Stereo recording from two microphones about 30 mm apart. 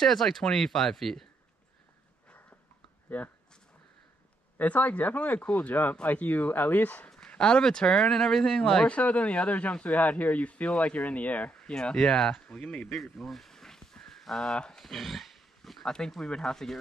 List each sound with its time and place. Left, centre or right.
0.0 s speech: centre
3.1 s speech: left
4.6 s speech: left
6.0 s speech: left
7.3 s speech: left
8.0 s speech: centre
8.8 s speech: left
11.7 s speech: left
12.9 s a sound: centre
14.3 s speech: centre
14.7 s dog: centre
15.8 s speech: centre